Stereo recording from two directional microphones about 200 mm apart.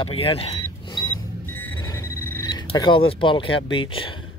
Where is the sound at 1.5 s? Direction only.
15° left (ahead or behind).